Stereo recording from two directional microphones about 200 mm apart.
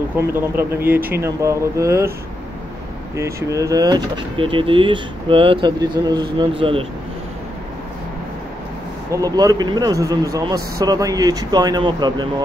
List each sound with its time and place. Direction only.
0.1 s a man's voice: 10° right (ahead or behind)
3.2 s speech: 15° right (ahead or behind)
9.1 s a man's voice: 20° right (ahead or behind)